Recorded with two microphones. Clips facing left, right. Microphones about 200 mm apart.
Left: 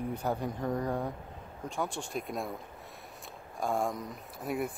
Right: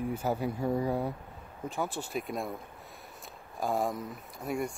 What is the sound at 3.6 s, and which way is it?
Speech, centre (ahead or behind).